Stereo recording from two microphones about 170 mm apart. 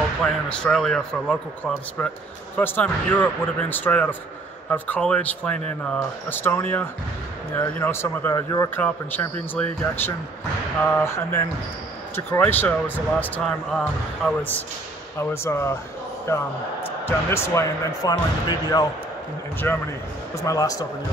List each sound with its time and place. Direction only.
0.2 s a man's voice: 5° left (ahead or behind); by 18.9 s 20° left (ahead or behind)
19.6 s a man's voice: 10° left (ahead or behind)